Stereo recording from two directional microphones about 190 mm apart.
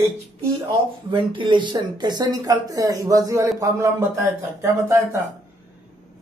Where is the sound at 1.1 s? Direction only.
25° right (ahead or behind).